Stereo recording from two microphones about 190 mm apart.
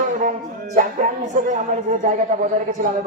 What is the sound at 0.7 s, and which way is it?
Speech, 40° right (ahead or behind).